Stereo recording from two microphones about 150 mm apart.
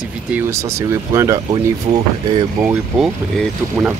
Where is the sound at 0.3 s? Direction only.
20° right (ahead or behind).